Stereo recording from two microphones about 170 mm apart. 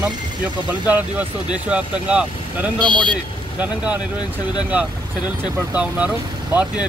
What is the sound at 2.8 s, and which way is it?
Speech, 25° right (ahead or behind).